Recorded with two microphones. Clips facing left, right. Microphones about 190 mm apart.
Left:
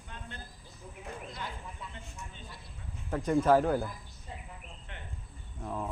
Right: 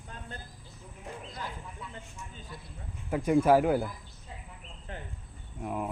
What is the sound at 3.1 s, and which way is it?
Speech, 10° right (ahead or behind).